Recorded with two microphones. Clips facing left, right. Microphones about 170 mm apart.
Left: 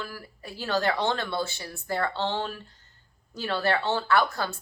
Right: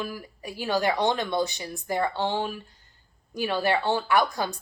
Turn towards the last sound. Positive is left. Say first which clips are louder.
# right 1 dB
turn(degrees=-15)  # may be behind; listen again after turning